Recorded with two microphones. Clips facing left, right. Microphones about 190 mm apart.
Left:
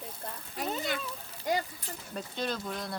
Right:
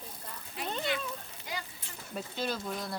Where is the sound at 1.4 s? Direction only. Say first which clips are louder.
Left 13 dB; 45° left (ahead or behind).